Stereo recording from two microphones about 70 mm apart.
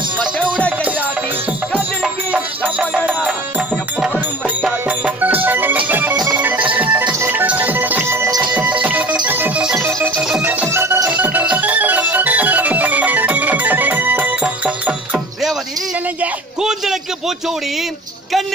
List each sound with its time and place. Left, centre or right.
0.4 s music: centre
2.3 s music: centre
4.8 s music: right
9.8 s music: right
11.1 s music: right